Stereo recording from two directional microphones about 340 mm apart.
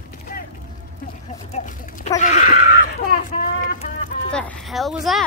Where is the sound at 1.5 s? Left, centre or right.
Left.